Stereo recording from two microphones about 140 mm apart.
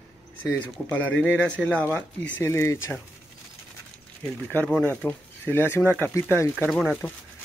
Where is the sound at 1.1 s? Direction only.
10° left (ahead or behind).